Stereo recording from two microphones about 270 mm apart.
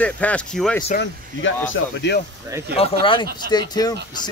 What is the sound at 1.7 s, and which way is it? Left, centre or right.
Speech, left.